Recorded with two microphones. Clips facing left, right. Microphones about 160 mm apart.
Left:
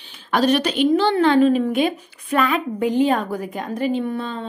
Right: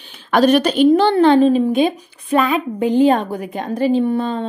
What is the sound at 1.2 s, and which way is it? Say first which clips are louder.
A woman's voice: right 4 dB; 30° right (ahead or behind).